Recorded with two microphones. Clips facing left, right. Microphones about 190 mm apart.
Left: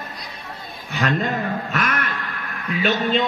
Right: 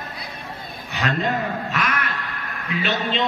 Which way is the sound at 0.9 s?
45° left (ahead or behind).